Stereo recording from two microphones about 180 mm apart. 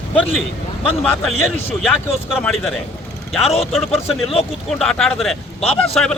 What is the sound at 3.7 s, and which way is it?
A man's voice, centre (ahead or behind).